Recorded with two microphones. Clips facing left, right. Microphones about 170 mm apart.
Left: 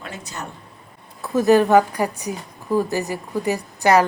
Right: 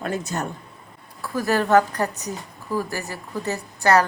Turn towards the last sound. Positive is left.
turn(degrees=15)  # may be behind; listen again after turning